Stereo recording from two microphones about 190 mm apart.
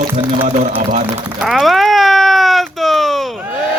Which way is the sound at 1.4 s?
Centre (ahead or behind).